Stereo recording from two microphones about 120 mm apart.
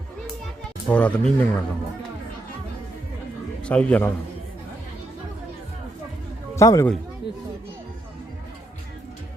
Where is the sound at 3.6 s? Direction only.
10° left (ahead or behind).